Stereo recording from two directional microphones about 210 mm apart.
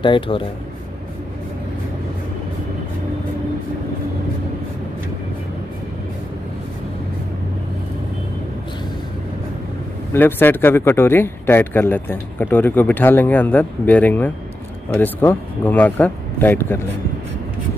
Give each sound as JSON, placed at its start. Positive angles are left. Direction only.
{"t": 0.0, "sound": "speech", "side_deg": 25}
{"t": 10.1, "sound": "speech", "side_deg": 10}